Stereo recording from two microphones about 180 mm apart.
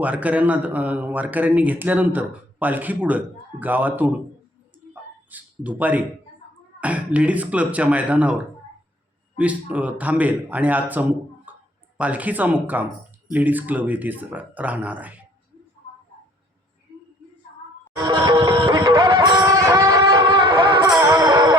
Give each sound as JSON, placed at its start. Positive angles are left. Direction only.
{"t": 0.0, "sound": "a man's voice", "side_deg": -10}
{"t": 5.3, "sound": "a man's voice", "side_deg": -10}
{"t": 9.4, "sound": "a man's voice", "side_deg": -10}
{"t": 11.5, "sound": "a sound", "side_deg": -10}
{"t": 11.9, "sound": "a man's voice", "side_deg": -10}
{"t": 17.9, "sound": "music", "side_deg": -25}